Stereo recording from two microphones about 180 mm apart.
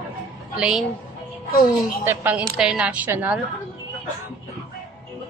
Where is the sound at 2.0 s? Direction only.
10° right (ahead or behind).